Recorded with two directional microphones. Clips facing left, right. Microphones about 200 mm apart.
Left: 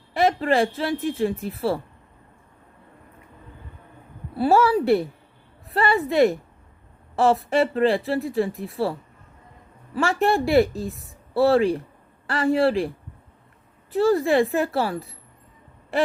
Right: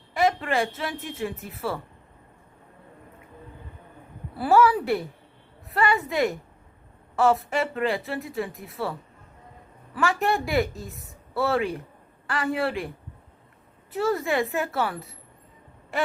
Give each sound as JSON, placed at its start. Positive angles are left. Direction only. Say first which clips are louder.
{"t": 0.1, "sound": "speech", "louder": "left 4 dB", "side_deg": 35}
{"t": 4.4, "sound": "speech", "louder": "left 2 dB", "side_deg": 30}
{"t": 7.5, "sound": "speech", "louder": "left 6 dB", "side_deg": 30}
{"t": 13.9, "sound": "speech", "louder": "left 6 dB", "side_deg": 30}